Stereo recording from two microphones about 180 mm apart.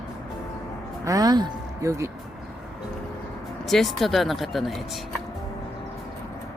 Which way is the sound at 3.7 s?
Centre (ahead or behind).